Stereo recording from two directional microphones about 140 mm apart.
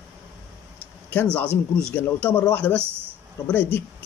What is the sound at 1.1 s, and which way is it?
Speech, 10° left (ahead or behind).